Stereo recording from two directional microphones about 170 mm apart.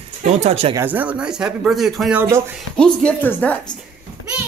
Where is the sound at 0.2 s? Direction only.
40° right (ahead or behind).